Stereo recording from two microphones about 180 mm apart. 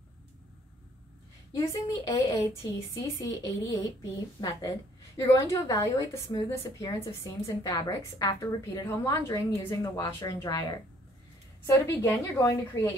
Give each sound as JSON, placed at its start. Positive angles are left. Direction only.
{"t": 1.5, "sound": "a woman's voice", "side_deg": 20}